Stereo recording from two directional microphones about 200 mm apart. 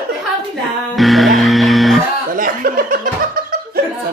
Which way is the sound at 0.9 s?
Centre (ahead or behind).